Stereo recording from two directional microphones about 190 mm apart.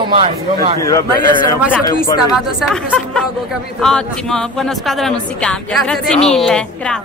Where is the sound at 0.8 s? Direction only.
15° left (ahead or behind).